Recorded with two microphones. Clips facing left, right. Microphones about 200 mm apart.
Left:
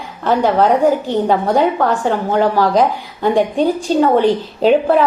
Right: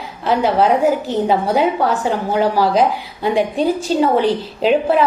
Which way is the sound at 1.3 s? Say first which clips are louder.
Left 1 dB; 10° right (ahead or behind).